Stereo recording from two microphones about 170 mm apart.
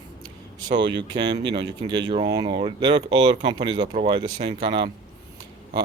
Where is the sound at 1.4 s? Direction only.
90° right.